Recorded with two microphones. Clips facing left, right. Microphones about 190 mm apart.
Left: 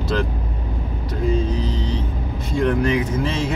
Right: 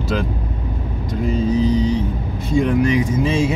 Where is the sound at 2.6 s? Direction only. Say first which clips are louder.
Right 1 dB; 15° right (ahead or behind).